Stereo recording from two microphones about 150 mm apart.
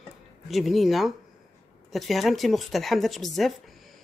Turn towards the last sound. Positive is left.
turn(degrees=0)  # may be behind; listen again after turning